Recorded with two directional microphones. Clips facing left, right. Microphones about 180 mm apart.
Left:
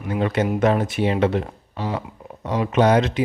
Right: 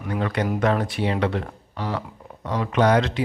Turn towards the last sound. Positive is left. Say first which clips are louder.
# left 2 dB
turn(degrees=20)  # may be behind; listen again after turning